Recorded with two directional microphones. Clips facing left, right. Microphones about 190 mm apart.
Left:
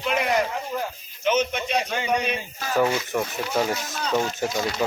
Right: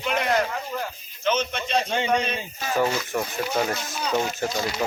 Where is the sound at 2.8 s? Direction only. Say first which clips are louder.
Left 2 dB; centre (ahead or behind).